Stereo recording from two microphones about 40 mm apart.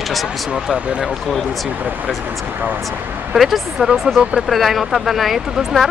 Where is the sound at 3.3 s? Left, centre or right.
Centre.